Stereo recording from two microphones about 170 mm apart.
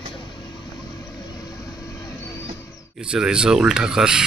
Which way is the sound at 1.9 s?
20° left (ahead or behind).